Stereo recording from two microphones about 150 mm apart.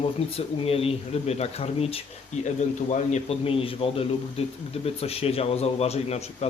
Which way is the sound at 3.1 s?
40° left (ahead or behind).